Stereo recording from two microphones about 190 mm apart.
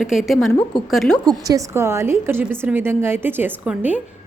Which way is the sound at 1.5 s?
15° right (ahead or behind).